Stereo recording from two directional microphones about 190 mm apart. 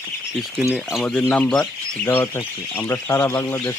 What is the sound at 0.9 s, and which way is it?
Speech, 5° left (ahead or behind).